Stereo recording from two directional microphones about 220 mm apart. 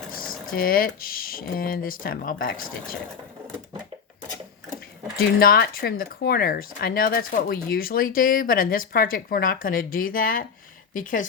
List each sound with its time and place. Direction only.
0.5 s speech: 40° left (ahead or behind)
5.1 s speech: 40° left (ahead or behind)